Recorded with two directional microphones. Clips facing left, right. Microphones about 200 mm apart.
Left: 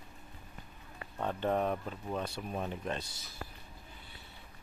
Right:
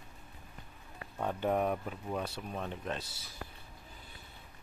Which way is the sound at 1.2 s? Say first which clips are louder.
Even; 10° right (ahead or behind).